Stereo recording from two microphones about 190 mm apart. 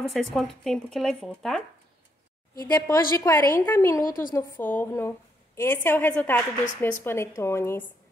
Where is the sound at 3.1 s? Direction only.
15° left (ahead or behind).